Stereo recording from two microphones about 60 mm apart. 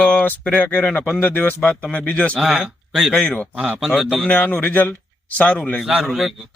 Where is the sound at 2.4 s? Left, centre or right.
Centre.